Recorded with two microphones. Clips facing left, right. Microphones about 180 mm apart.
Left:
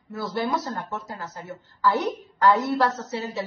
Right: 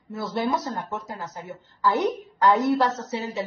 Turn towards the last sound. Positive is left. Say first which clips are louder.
# right 1 dB
turn(degrees=-20)  # may be behind; listen again after turning